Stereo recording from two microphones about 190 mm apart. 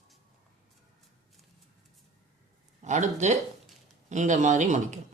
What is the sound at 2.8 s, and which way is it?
Speech, 40° right (ahead or behind).